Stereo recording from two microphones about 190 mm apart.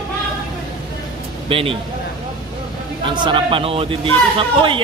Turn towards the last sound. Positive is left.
turn(degrees=-30)  # may be behind; listen again after turning